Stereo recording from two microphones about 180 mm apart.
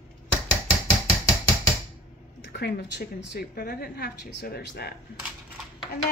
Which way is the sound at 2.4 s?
65° left (ahead or behind).